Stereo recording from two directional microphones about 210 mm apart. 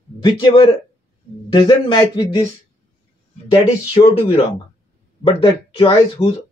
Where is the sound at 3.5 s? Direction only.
20° left (ahead or behind).